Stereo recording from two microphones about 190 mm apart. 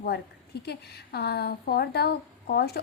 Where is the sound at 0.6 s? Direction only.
60° left (ahead or behind).